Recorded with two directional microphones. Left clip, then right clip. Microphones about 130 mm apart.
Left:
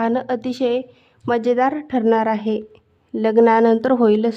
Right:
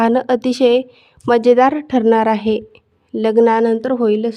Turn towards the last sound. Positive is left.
turn(degrees=0)  # may be behind; listen again after turning